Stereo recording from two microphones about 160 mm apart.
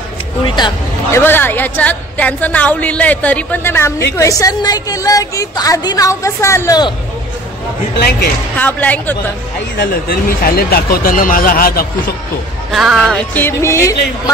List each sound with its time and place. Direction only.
1.1 s a woman's voice: 15° left (ahead or behind)
8.5 s a woman's voice: 10° left (ahead or behind)
9.8 s speech: 65° left (ahead or behind)
12.7 s speech: centre (ahead or behind)
13.3 s a woman's voice: 15° left (ahead or behind)